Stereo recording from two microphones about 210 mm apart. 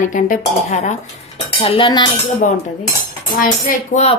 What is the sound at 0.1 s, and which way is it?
Speech, 35° left (ahead or behind).